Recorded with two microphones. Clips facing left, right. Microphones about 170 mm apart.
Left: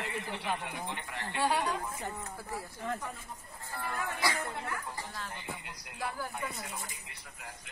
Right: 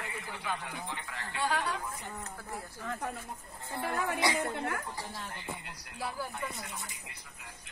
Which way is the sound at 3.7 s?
60° right (ahead or behind).